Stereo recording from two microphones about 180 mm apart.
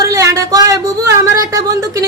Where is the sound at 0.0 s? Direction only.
15° right (ahead or behind).